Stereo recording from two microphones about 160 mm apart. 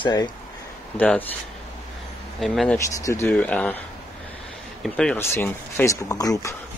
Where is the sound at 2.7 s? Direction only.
20° left (ahead or behind).